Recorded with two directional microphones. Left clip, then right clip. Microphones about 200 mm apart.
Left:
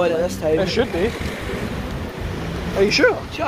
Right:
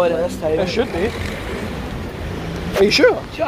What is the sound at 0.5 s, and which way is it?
Speech, centre (ahead or behind).